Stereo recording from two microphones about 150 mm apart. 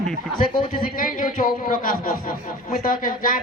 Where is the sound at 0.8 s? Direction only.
70° left (ahead or behind).